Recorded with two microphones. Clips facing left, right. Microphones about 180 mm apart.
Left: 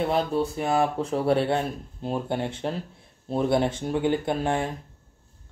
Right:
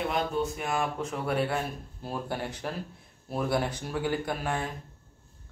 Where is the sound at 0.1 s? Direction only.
35° left (ahead or behind).